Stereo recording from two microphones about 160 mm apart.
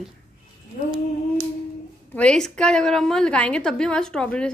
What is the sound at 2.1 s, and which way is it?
A woman's voice, 5° left (ahead or behind).